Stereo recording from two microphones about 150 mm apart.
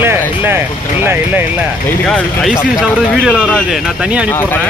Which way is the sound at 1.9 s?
5° left (ahead or behind).